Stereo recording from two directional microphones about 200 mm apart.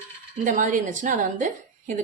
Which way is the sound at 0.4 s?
40° right (ahead or behind).